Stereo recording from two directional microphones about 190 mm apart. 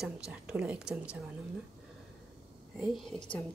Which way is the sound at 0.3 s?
5° right (ahead or behind).